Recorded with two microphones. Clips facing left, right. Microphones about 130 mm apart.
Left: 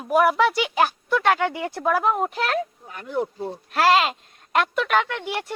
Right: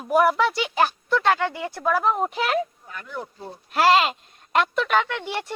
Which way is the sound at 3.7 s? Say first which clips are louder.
Right 1 dB; centre (ahead or behind).